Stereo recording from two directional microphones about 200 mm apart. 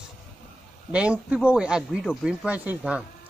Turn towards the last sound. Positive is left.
turn(degrees=-5)  # may be behind; listen again after turning